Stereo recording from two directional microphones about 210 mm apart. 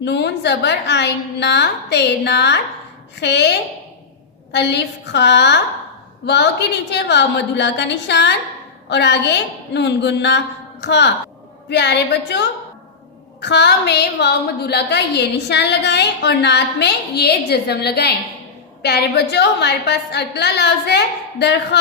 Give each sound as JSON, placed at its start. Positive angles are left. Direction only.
{"t": 0.0, "sound": "a woman's voice", "side_deg": 55}
{"t": 4.5, "sound": "a woman's voice", "side_deg": 55}